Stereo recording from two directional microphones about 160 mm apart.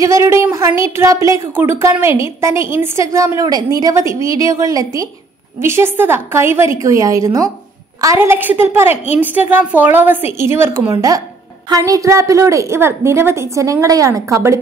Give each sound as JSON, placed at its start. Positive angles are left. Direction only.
{"t": 0.0, "sound": "a woman's voice", "side_deg": -20}